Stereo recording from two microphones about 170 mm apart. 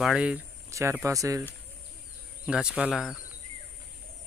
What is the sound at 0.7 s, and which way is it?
Speech, 15° right (ahead or behind).